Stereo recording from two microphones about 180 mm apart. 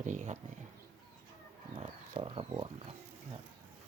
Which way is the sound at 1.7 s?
35° right (ahead or behind).